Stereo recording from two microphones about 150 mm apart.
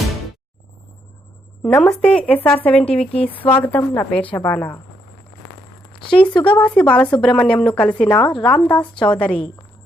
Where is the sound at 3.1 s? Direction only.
40° left (ahead or behind).